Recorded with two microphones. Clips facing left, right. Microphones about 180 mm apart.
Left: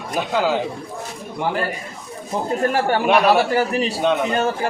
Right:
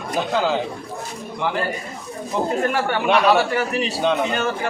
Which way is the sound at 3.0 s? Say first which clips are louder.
Even; 5° left (ahead or behind).